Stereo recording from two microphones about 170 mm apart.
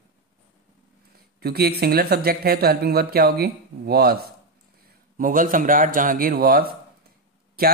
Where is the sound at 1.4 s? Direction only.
70° right (ahead or behind).